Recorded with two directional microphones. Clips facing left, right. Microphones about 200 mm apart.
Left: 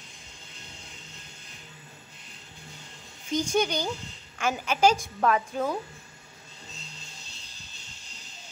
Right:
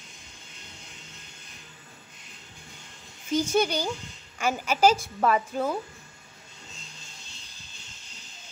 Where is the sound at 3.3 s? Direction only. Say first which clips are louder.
Right 2 dB; 5° right (ahead or behind).